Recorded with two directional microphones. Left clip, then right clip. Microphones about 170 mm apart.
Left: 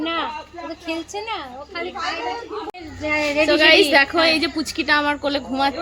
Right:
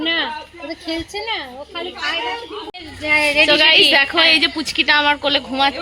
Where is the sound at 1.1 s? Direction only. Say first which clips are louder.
Right 3 dB; 45° right (ahead or behind).